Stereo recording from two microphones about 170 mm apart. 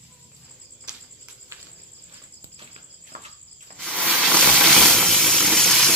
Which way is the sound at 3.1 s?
55° right (ahead or behind).